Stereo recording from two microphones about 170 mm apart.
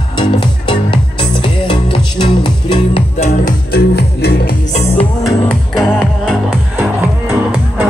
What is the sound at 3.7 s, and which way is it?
Music, 65° left (ahead or behind).